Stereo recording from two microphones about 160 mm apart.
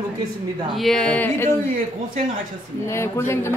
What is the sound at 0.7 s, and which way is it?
Speech, centre (ahead or behind).